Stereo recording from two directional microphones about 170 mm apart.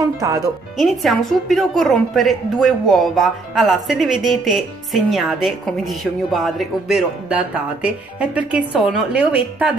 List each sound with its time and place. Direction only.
0.0 s speech: 20° right (ahead or behind)
0.7 s a woman's voice: centre (ahead or behind)